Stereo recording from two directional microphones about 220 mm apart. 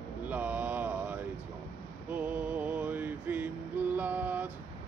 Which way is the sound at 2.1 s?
5° right (ahead or behind).